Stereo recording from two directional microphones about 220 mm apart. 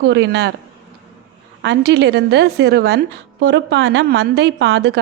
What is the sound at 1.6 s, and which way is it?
A woman's voice, 50° right (ahead or behind).